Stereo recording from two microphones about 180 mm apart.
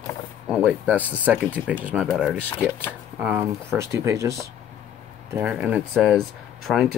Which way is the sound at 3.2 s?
10° right (ahead or behind).